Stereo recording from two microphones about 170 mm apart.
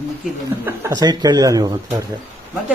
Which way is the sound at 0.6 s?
15° right (ahead or behind).